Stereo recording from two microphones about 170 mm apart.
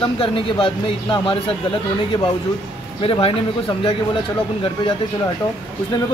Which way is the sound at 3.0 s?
30° left (ahead or behind).